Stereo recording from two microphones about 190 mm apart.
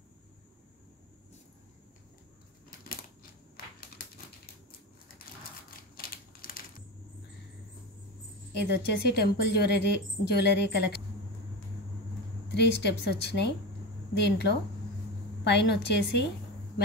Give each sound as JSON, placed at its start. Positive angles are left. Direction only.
{"t": 5.9, "sound": "typewriter", "side_deg": 50}
{"t": 8.5, "sound": "a woman's voice", "side_deg": 60}
{"t": 12.5, "sound": "a woman's voice", "side_deg": 60}